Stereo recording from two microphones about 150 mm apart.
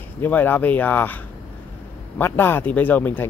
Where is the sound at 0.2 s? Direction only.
10° left (ahead or behind).